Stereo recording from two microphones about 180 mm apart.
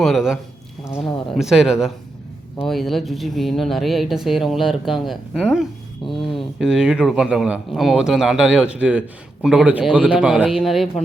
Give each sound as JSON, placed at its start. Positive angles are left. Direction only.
{"t": 0.0, "sound": "speech", "side_deg": 0}